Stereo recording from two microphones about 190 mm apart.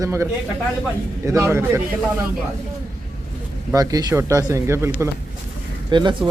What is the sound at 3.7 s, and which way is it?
Speech, 20° right (ahead or behind).